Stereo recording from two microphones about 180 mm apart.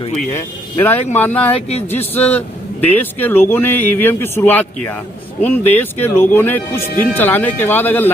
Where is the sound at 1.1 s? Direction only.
10° left (ahead or behind).